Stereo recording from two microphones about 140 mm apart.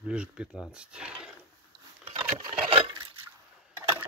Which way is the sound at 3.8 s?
15° right (ahead or behind).